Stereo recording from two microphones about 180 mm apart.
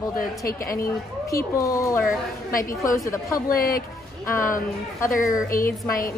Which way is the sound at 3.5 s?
55° left (ahead or behind).